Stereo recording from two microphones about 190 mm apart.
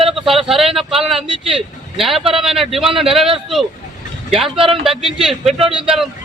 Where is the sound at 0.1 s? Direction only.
Centre (ahead or behind).